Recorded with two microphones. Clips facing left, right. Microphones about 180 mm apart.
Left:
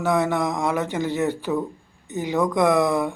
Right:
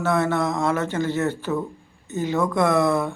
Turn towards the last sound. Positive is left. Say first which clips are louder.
# left 1 dB
turn(degrees=15)  # may be behind; listen again after turning